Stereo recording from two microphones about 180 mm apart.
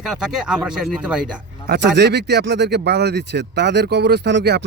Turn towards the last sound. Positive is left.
turn(degrees=-70)  # may be behind; listen again after turning